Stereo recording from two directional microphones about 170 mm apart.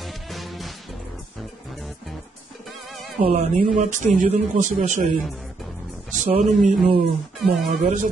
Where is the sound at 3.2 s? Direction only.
35° right (ahead or behind).